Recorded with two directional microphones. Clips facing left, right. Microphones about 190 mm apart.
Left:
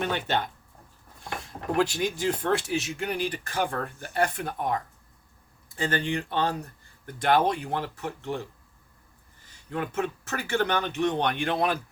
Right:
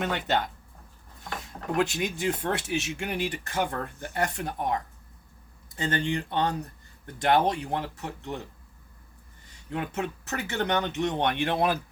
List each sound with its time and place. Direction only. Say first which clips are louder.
1.7 s speech: left 1 dB; 20° right (ahead or behind)
9.6 s speech: left 2 dB; 20° right (ahead or behind)